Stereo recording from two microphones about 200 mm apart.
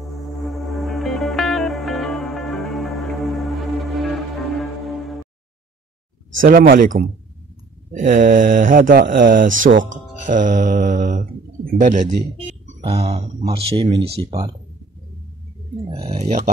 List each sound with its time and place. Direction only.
0.2 s music: centre (ahead or behind)
6.4 s speech: 45° right (ahead or behind); by 14.3 s 25° right (ahead or behind)
15.9 s speech: 30° right (ahead or behind)